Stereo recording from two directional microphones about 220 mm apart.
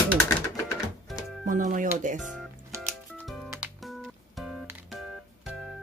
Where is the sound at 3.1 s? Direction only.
Centre (ahead or behind).